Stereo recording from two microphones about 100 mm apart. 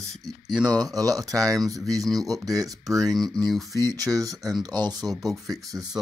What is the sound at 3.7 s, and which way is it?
Speech, 40° right (ahead or behind).